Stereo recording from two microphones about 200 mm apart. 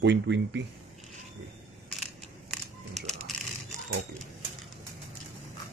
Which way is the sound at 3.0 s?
35° right (ahead or behind).